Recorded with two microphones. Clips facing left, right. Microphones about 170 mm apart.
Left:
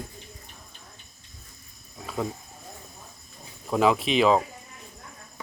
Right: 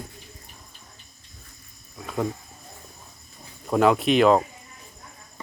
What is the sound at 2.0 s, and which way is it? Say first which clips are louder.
Speech: right 3 dB; centre (ahead or behind).